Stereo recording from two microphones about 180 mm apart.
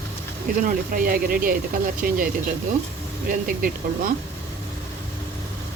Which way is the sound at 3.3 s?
50° right (ahead or behind).